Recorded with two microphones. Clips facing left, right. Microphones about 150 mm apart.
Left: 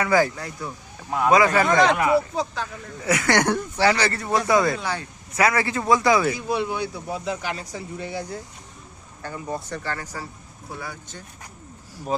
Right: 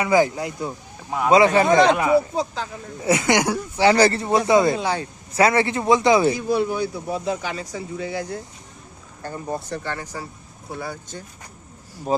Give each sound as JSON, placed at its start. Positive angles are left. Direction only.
{"t": 0.0, "sound": "speech", "side_deg": -20}
{"t": 3.3, "sound": "speech", "side_deg": -10}
{"t": 3.9, "sound": "speech", "side_deg": -40}
{"t": 4.2, "sound": "speech", "side_deg": -25}
{"t": 6.5, "sound": "speech", "side_deg": -45}
{"t": 8.1, "sound": "speech", "side_deg": -85}
{"t": 9.2, "sound": "speech", "side_deg": -40}
{"t": 9.8, "sound": "speech", "side_deg": -20}
{"t": 10.8, "sound": "speech", "side_deg": -30}